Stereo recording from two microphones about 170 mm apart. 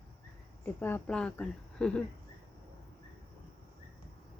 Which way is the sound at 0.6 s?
10° left (ahead or behind).